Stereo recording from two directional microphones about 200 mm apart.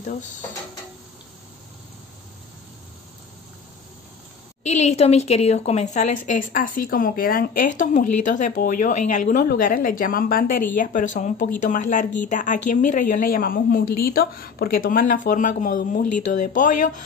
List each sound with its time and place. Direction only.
4.6 s a woman's voice: 35° left (ahead or behind)